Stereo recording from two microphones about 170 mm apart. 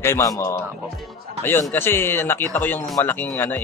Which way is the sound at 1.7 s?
15° left (ahead or behind).